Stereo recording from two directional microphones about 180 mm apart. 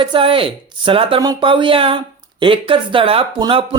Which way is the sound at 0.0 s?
30° right (ahead or behind).